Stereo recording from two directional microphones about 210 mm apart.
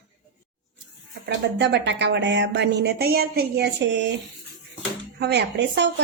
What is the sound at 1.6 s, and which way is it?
Speech, 55° right (ahead or behind).